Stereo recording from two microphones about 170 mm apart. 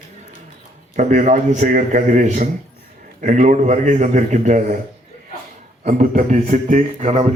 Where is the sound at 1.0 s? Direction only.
45° right (ahead or behind).